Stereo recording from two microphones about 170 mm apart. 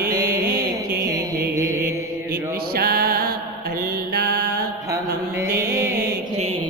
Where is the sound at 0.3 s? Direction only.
60° right (ahead or behind).